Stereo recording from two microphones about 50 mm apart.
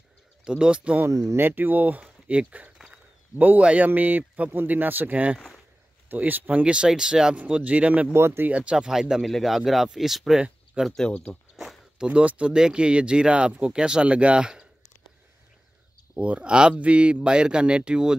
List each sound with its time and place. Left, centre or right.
0.5 s speech: right
1.0 s speech: right
6.6 s speech: right
7.3 s speech: right
8.1 s speech: right
8.5 s speech: right
9.3 s speech: centre
10.8 s speech: centre
11.5 s a sound: centre
12.0 s speech: right
16.2 s speech: right